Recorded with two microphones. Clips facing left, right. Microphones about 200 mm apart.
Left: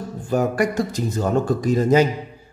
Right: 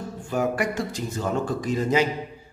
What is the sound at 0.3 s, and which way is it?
A man's voice, 40° left (ahead or behind).